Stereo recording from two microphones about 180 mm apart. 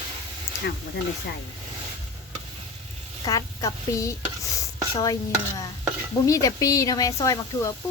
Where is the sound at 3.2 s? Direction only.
20° left (ahead or behind).